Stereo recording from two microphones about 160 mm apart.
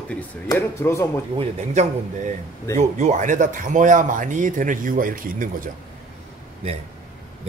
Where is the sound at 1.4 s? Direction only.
45° right (ahead or behind).